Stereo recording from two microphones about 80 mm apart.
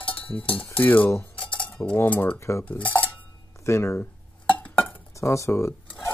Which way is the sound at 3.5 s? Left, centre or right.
Left.